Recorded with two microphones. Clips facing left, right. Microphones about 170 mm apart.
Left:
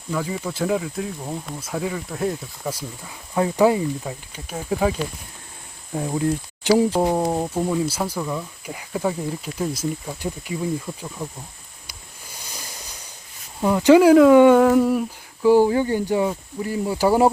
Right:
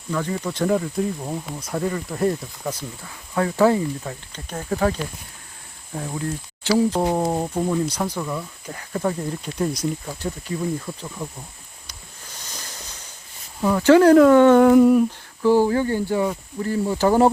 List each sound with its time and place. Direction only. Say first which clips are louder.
0.1 s speech: right 1 dB; 5° left (ahead or behind)
11.9 s a sound: left 1 dB; 10° left (ahead or behind)
13.6 s speech: left 1 dB; 15° left (ahead or behind)
14.6 s humming: right 4 dB; centre (ahead or behind)
15.4 s speech: left 2 dB; 15° left (ahead or behind)